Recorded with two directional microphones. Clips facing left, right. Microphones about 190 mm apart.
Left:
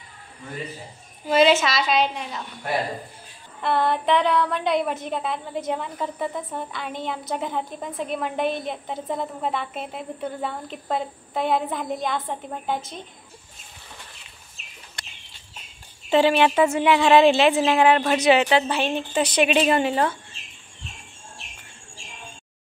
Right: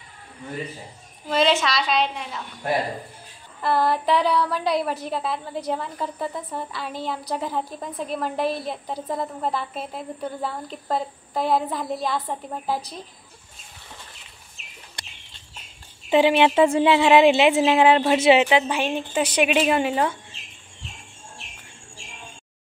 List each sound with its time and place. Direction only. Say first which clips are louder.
1.2 s a woman's voice: left 3 dB; 5° left (ahead or behind)
3.6 s a woman's voice: even; centre (ahead or behind)
16.1 s speech: right 1 dB; 20° right (ahead or behind)
16.6 s a woman's voice: right 1 dB; 30° right (ahead or behind); by 20.2 s 10° right (ahead or behind)